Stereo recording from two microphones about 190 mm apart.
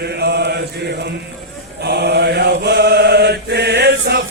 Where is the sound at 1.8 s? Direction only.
60° right (ahead or behind).